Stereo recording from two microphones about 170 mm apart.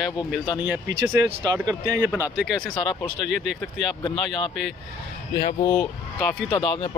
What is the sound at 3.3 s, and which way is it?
Speech, centre (ahead or behind).